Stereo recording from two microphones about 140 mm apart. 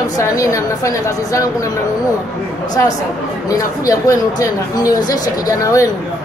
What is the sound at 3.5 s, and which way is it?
Speech, 25° left (ahead or behind).